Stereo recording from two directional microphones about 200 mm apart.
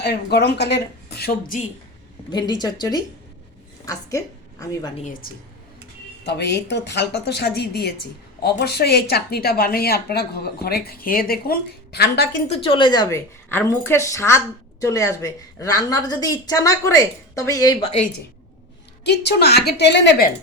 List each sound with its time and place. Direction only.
0.0 s a woman's voice: 55° left (ahead or behind)
1.2 s a woman's voice: 45° left (ahead or behind)
2.3 s a woman's voice: 20° left (ahead or behind)
4.9 s a woman's voice: 40° left (ahead or behind)
6.2 s a woman's voice: 55° left (ahead or behind)
12.5 s a woman's voice: 25° left (ahead or behind)
19.0 s a woman's voice: 55° left (ahead or behind)